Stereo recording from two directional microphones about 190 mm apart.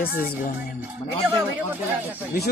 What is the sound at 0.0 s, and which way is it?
Speech, 55° left (ahead or behind).